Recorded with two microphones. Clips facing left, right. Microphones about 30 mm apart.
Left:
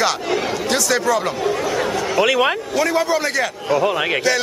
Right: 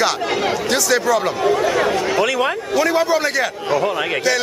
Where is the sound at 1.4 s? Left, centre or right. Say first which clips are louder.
Right 4 dB; centre.